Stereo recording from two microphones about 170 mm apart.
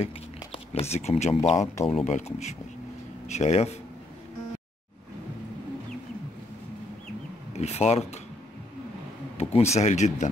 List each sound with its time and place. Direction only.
0.0 s speech: 35° left (ahead or behind)
7.5 s speech: 40° left (ahead or behind)
9.4 s speech: 40° left (ahead or behind)